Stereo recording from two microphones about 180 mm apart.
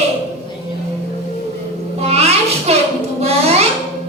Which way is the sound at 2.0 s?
35° right (ahead or behind).